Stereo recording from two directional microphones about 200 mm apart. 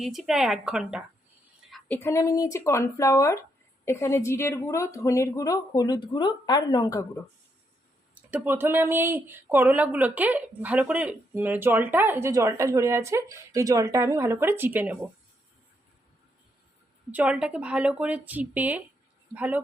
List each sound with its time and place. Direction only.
0.0 s speech: centre (ahead or behind)
1.7 s a woman's voice: 10° left (ahead or behind)
8.3 s speech: 10° right (ahead or behind)
17.1 s speech: 5° right (ahead or behind)